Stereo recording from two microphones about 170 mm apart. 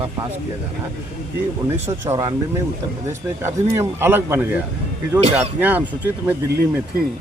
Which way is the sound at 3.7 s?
15° right (ahead or behind).